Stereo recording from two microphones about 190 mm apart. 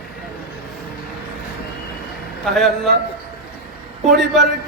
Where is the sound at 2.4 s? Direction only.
Centre (ahead or behind).